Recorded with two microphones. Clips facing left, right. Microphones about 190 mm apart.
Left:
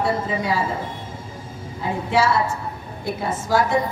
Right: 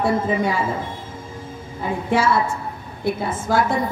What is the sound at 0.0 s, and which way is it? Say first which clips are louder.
Speech: right 3 dB; 50° right (ahead or behind).